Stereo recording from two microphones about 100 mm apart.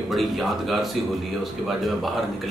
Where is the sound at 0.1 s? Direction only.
Centre (ahead or behind).